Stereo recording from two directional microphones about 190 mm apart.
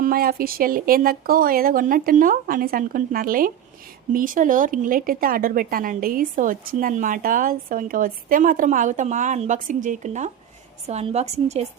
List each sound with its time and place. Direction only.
0.0 s a woman's voice: 50° right (ahead or behind); by 11.7 s 35° right (ahead or behind)